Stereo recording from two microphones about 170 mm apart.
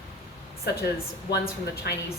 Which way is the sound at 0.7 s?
75° left (ahead or behind).